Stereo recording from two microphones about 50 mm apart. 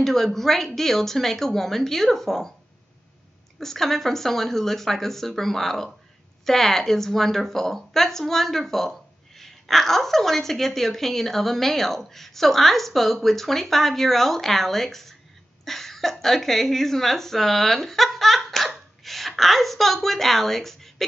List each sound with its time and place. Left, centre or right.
0.0 s a woman's voice: centre
3.5 s a woman's voice: centre